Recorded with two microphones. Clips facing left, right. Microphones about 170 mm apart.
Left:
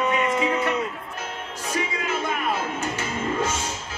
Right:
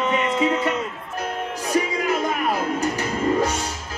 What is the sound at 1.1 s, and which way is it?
Music, 35° right (ahead or behind).